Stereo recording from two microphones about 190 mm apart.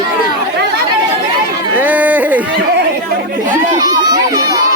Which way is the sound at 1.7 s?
10° right (ahead or behind).